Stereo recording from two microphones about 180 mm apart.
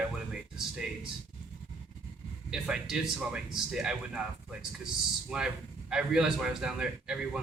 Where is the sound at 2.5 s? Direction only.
5° right (ahead or behind).